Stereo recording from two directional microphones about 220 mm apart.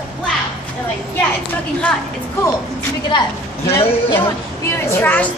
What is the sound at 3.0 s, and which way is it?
A woman's voice, 15° left (ahead or behind).